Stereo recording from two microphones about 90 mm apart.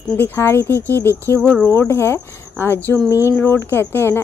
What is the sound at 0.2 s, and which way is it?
Speech, 25° left (ahead or behind).